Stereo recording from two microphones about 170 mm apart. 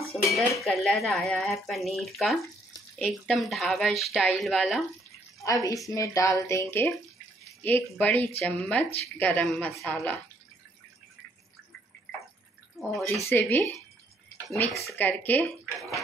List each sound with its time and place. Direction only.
0.5 s speech: centre (ahead or behind)
5.4 s a woman's voice: 20° left (ahead or behind)
12.7 s speech: centre (ahead or behind)
13.3 s a woman's voice: 10° left (ahead or behind)
14.5 s a woman's voice: centre (ahead or behind)